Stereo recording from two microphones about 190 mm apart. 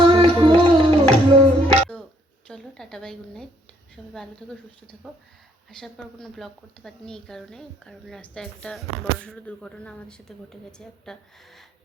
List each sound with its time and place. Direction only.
0.0 s music: 30° right (ahead or behind)
2.5 s a sound: 5° left (ahead or behind)
4.1 s a woman's voice: 5° left (ahead or behind)